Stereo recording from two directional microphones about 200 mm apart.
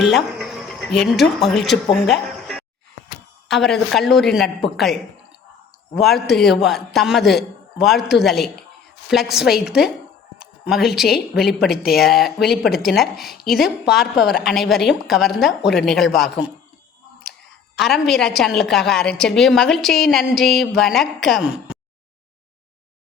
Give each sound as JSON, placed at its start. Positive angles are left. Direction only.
{"t": 0.0, "sound": "a woman's voice", "side_deg": 0}
{"t": 5.9, "sound": "a woman's voice", "side_deg": 0}
{"t": 17.7, "sound": "a woman's voice", "side_deg": 0}